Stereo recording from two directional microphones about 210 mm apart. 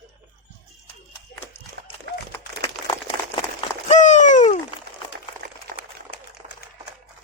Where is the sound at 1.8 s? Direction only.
50° right (ahead or behind).